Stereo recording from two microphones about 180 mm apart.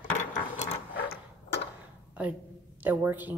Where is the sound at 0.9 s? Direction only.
70° left (ahead or behind).